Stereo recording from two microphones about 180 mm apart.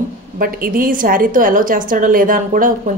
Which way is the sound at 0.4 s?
50° right (ahead or behind).